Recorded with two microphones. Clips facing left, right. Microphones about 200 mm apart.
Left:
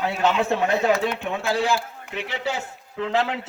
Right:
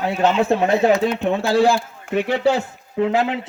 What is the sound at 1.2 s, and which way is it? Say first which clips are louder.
Speech: right 7 dB; 35° right (ahead or behind).